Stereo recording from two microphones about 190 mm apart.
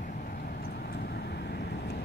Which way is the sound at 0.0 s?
50° left (ahead or behind).